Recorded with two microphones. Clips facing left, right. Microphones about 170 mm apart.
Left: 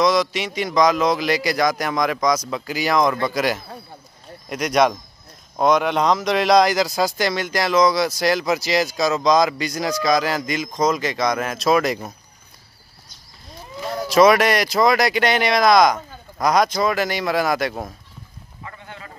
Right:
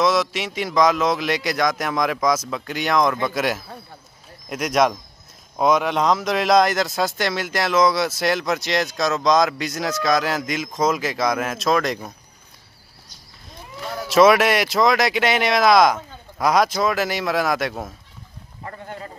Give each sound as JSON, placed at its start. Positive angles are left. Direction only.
{"t": 0.0, "sound": "speech", "side_deg": -5}
{"t": 13.7, "sound": "speech", "side_deg": 0}
{"t": 18.6, "sound": "a sound", "side_deg": -40}